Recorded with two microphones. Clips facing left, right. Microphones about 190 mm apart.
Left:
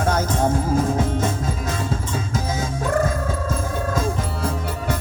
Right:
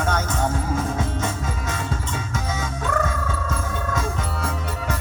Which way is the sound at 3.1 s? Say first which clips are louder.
Left 3 dB; 35° left (ahead or behind).